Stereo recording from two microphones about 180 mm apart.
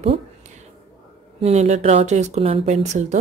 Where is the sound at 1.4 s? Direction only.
40° right (ahead or behind).